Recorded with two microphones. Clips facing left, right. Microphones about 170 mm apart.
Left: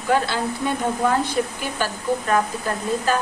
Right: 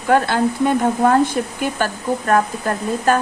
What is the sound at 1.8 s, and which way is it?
Speech, 50° right (ahead or behind).